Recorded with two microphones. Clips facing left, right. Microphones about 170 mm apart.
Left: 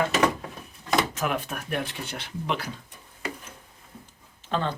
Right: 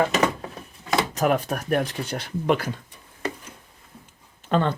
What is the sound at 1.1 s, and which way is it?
Speech, 40° right (ahead or behind).